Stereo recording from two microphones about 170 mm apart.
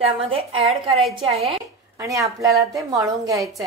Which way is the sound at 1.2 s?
35° right (ahead or behind).